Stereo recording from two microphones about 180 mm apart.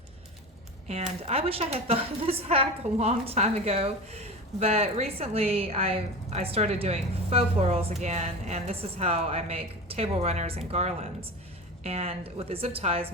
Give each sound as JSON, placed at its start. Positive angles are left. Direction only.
{"t": 0.9, "sound": "a woman's voice", "side_deg": -35}